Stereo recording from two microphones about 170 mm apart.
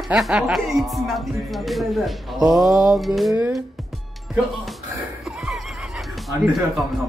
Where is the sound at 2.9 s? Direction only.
Centre (ahead or behind).